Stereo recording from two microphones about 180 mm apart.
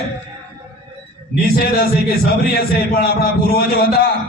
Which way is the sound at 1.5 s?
60° left (ahead or behind).